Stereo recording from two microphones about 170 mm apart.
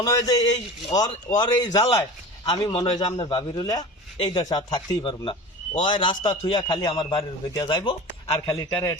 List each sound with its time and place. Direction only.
0.0 s a man's voice: 20° left (ahead or behind)
1.9 s a sound: 15° left (ahead or behind)
2.5 s a man's voice: 25° left (ahead or behind)